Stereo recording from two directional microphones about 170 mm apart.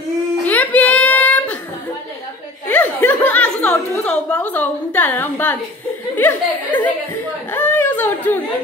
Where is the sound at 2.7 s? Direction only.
10° left (ahead or behind).